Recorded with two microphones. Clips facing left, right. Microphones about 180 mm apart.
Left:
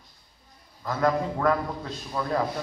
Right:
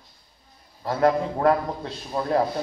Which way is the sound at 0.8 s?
35° right (ahead or behind).